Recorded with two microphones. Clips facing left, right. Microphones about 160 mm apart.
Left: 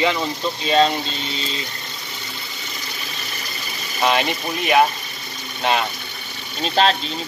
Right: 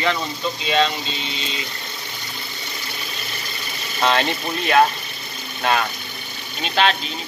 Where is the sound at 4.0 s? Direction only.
15° left (ahead or behind).